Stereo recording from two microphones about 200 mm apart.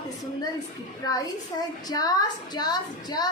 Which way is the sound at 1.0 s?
20° left (ahead or behind).